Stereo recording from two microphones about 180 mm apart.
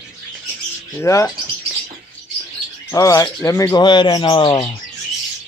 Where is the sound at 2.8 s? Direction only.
15° left (ahead or behind).